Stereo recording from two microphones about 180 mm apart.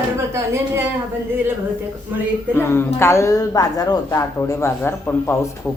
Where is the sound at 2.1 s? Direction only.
10° right (ahead or behind).